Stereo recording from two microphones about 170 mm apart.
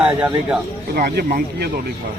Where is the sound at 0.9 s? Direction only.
65° right (ahead or behind).